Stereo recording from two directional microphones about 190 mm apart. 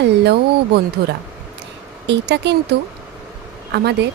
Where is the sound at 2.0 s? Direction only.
65° right (ahead or behind).